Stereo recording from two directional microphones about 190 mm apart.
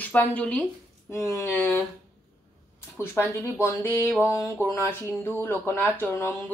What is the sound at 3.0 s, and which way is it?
Speech, 15° left (ahead or behind).